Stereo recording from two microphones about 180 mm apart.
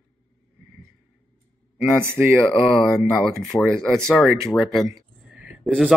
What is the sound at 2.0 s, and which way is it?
Speech, 15° right (ahead or behind).